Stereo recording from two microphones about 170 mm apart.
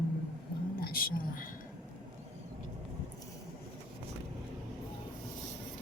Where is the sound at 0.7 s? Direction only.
65° left (ahead or behind).